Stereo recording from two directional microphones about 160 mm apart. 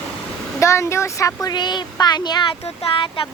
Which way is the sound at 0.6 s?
15° left (ahead or behind).